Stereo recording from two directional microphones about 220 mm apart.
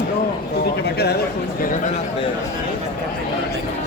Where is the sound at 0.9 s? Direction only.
50° left (ahead or behind).